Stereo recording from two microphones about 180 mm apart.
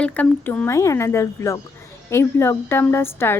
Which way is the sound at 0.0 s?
10° left (ahead or behind).